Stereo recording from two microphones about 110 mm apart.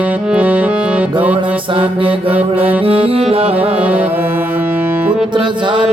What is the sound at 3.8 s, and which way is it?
Music, 10° right (ahead or behind).